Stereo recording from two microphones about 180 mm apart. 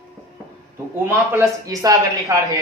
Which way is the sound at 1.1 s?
15° right (ahead or behind).